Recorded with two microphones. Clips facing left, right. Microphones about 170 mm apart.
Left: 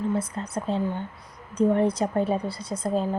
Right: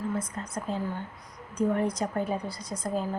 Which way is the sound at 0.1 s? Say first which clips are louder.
Left 5 dB; 30° left (ahead or behind).